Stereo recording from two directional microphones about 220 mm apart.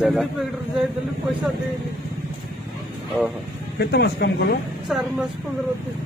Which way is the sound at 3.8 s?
50° left (ahead or behind).